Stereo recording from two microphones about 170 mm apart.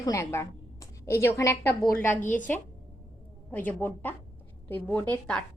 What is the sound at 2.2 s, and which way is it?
Speech, 50° left (ahead or behind).